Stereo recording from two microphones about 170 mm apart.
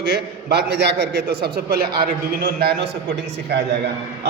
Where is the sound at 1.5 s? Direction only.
65° right (ahead or behind).